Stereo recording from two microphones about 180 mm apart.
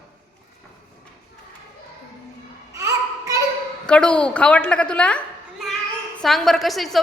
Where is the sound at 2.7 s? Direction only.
15° right (ahead or behind).